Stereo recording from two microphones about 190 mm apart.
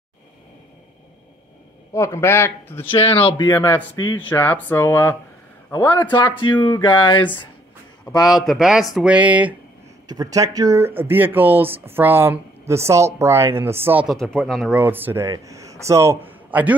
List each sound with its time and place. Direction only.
2.0 s speech: 15° left (ahead or behind)
2.9 s speech: 30° left (ahead or behind)
3.4 s speech: 15° left (ahead or behind)
8.3 s speech: centre (ahead or behind)
10.0 s speech: 20° right (ahead or behind)